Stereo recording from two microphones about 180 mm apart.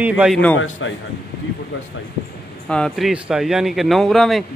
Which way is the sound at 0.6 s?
90° left.